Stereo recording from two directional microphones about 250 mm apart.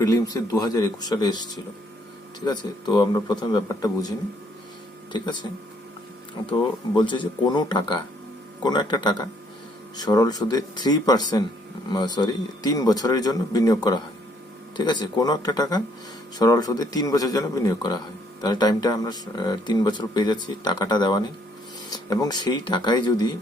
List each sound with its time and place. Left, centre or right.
0.0 s speech: centre
5.1 s speech: centre
6.9 s speech: centre